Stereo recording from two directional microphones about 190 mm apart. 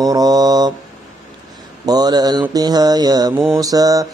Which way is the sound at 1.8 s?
20° right (ahead or behind).